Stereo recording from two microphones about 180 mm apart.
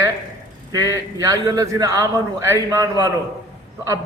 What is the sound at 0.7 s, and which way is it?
A man's voice, 20° right (ahead or behind).